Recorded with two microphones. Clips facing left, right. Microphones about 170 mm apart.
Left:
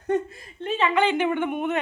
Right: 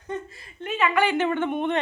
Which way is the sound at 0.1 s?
55° left (ahead or behind).